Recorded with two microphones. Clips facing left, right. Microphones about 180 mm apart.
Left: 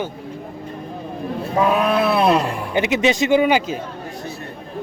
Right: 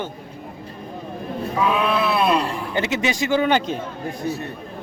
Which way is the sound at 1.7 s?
45° left (ahead or behind).